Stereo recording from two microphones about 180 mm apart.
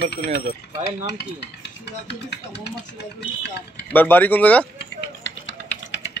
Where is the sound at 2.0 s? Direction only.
70° left (ahead or behind).